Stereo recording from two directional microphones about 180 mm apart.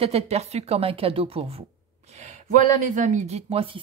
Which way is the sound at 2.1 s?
40° right (ahead or behind).